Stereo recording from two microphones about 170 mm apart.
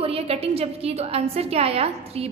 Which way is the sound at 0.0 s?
35° right (ahead or behind).